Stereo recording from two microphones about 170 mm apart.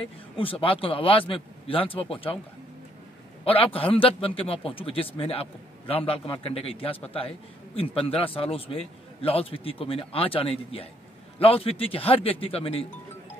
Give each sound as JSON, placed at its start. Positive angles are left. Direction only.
{"t": 0.0, "sound": "a man's voice", "side_deg": 30}
{"t": 3.4, "sound": "a man's voice", "side_deg": 35}